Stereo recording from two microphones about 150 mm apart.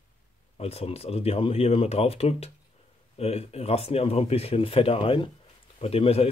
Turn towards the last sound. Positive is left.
turn(degrees=40)  # may be behind; listen again after turning